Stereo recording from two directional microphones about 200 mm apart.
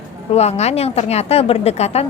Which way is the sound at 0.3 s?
35° left (ahead or behind).